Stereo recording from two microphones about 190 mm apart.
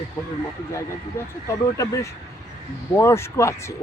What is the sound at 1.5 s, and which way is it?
Speech, 15° left (ahead or behind).